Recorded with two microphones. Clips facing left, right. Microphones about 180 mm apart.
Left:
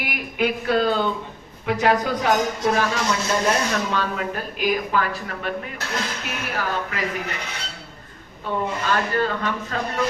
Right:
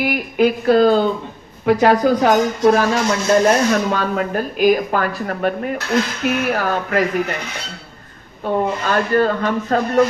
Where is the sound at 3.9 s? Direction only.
45° right (ahead or behind).